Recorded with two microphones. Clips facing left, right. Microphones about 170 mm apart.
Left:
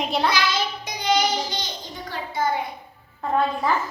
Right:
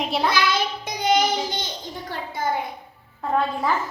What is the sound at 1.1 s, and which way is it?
Child singing, 50° right (ahead or behind).